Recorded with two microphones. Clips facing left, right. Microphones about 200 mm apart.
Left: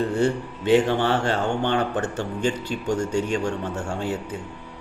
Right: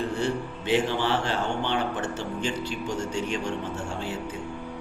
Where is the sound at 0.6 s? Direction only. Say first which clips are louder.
Left 6 dB; 55° left (ahead or behind).